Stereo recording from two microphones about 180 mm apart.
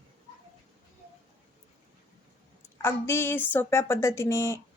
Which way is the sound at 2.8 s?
15° left (ahead or behind).